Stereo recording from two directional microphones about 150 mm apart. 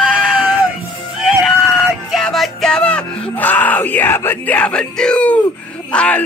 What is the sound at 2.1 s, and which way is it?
Music, centre (ahead or behind).